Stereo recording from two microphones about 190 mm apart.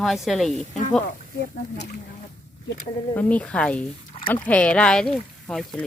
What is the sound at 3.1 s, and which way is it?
Speech, 5° left (ahead or behind).